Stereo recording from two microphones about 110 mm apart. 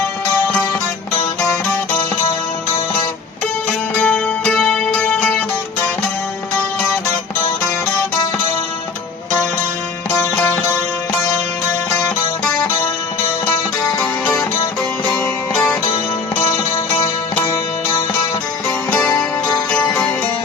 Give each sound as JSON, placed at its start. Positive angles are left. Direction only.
{"t": 3.9, "sound": "music", "side_deg": 5}
{"t": 11.9, "sound": "music", "side_deg": 15}
{"t": 15.5, "sound": "music", "side_deg": 10}
{"t": 18.9, "sound": "music", "side_deg": 15}